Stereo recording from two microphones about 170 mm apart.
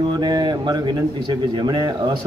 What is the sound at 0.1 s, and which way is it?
A man's voice, 25° right (ahead or behind).